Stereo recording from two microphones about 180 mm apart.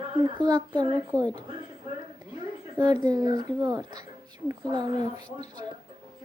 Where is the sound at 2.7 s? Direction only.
20° right (ahead or behind).